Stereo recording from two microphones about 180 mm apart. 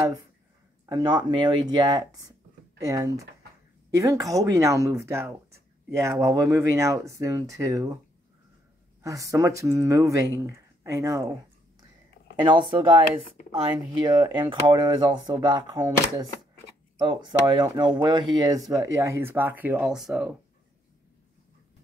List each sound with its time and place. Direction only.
0.8 s speech: 25° right (ahead or behind)
9.0 s speech: 20° right (ahead or behind)
12.4 s speech: 25° right (ahead or behind)
14.0 s speech: 20° right (ahead or behind); by 20.3 s centre (ahead or behind)